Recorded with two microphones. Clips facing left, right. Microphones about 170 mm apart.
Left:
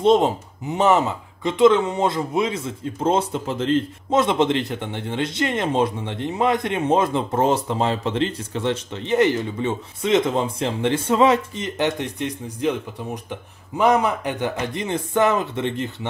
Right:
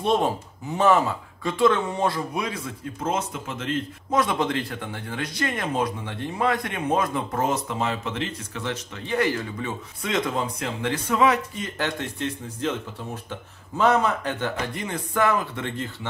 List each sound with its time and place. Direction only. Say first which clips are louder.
0.0 s speech: left 6 dB; 20° left (ahead or behind)